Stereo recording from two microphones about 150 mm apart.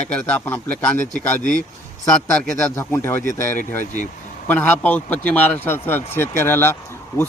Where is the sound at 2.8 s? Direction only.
15° left (ahead or behind).